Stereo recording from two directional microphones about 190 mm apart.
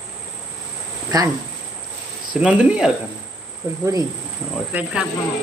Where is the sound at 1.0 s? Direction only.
15° right (ahead or behind).